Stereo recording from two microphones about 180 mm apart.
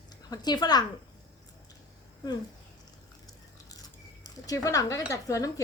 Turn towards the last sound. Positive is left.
turn(degrees=20)  # may be behind; listen again after turning